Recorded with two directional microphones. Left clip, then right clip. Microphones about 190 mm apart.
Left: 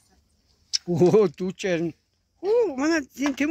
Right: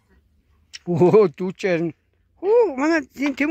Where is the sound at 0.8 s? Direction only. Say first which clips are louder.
Right 4 dB; 50° right (ahead or behind).